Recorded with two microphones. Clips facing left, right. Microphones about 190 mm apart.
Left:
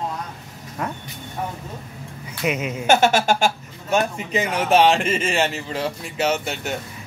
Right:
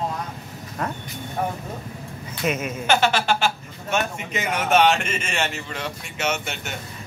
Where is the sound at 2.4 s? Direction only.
15° left (ahead or behind).